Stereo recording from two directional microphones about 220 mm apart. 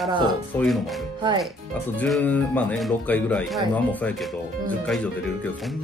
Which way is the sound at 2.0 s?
5° left (ahead or behind).